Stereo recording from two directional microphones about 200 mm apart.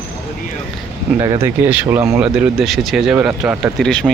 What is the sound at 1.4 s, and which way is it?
Speech, 10° right (ahead or behind).